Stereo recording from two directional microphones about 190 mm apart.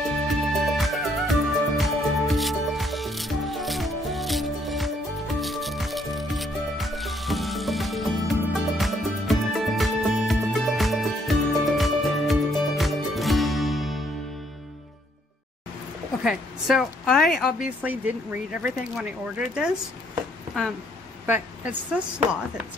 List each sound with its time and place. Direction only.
0.3 s music: centre (ahead or behind)
16.3 s a woman's voice: centre (ahead or behind)